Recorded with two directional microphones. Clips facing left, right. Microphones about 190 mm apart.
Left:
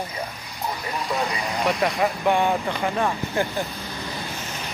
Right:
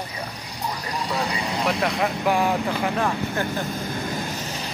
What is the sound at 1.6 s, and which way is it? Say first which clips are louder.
Speech: left 2 dB; centre (ahead or behind).